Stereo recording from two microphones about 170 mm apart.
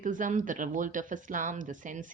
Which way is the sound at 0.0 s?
50° right (ahead or behind).